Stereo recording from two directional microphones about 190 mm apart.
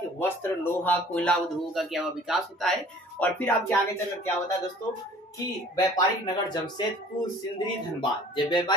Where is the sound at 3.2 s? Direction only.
10° left (ahead or behind).